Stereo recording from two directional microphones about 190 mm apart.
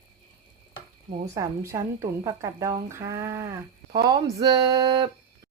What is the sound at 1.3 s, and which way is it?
Speech, 15° right (ahead or behind).